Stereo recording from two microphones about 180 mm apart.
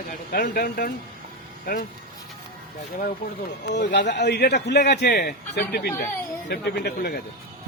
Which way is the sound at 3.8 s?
70° left (ahead or behind).